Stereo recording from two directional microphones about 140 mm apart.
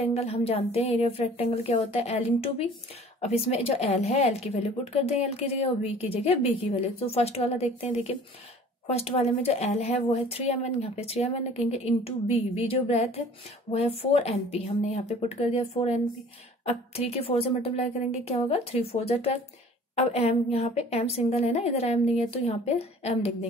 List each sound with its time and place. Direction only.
0.1 s a woman's voice: 45° left (ahead or behind)